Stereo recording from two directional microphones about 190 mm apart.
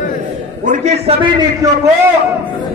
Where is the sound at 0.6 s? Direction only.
40° right (ahead or behind).